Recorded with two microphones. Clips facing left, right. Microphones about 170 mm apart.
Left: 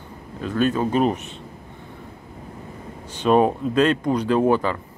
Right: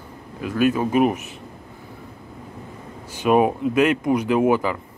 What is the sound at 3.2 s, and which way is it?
Speech, 10° right (ahead or behind).